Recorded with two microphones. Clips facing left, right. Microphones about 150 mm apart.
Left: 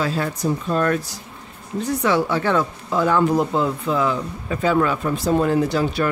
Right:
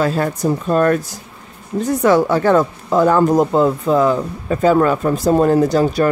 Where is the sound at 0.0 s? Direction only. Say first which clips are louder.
Right 5 dB; 50° right (ahead or behind).